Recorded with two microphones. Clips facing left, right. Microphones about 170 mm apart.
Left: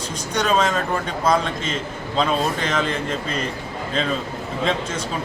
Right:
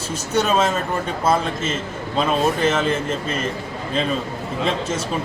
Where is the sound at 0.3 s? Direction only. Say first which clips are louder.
Right 1 dB; 5° right (ahead or behind).